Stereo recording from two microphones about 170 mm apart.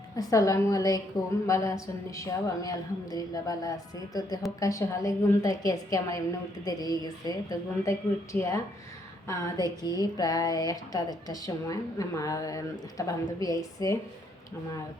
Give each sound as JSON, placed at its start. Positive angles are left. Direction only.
{"t": 0.2, "sound": "speech", "side_deg": 20}